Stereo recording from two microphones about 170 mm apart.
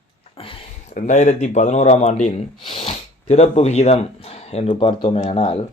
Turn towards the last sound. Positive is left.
turn(degrees=35)  # may be behind; listen again after turning